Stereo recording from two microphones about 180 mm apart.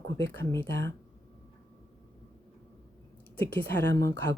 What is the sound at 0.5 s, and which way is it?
Speech, 15° left (ahead or behind).